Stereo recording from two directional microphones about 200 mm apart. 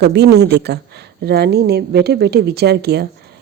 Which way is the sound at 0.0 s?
55° right (ahead or behind).